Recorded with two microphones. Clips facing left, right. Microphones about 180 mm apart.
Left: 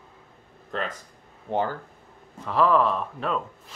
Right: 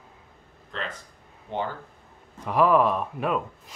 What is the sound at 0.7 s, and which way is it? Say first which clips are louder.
Speech: left 4 dB; 45° left (ahead or behind).